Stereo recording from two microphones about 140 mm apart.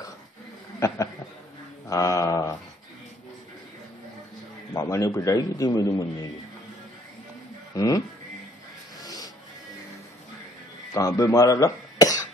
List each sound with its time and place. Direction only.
0.7 s a man's voice: 20° left (ahead or behind)
4.7 s a man's voice: 20° left (ahead or behind)
7.7 s speech: 25° left (ahead or behind)
9.0 s music: 25° left (ahead or behind)
10.9 s speech: 25° left (ahead or behind)